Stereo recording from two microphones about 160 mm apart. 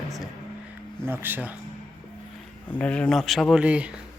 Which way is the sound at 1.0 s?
15° right (ahead or behind).